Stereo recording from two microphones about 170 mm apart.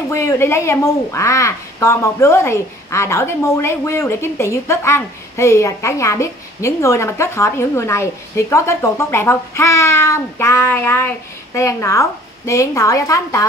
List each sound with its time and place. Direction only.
0.1 s a woman's voice: 15° left (ahead or behind)